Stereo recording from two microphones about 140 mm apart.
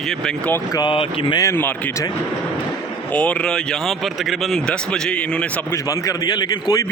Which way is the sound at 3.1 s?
10° left (ahead or behind).